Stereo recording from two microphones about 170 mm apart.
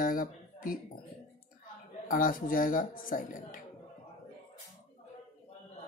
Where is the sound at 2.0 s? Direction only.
55° left (ahead or behind).